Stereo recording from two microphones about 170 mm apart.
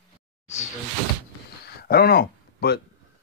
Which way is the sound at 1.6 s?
65° left (ahead or behind).